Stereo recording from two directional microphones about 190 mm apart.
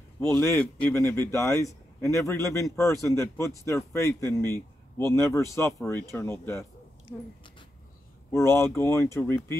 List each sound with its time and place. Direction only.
0.3 s a man's voice: 15° left (ahead or behind)
8.3 s speech: 15° left (ahead or behind)